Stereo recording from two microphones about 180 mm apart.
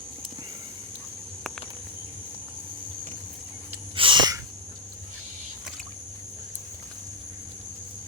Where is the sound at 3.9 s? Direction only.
30° right (ahead or behind).